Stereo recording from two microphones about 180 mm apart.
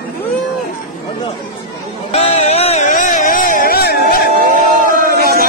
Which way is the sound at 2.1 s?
35° left (ahead or behind).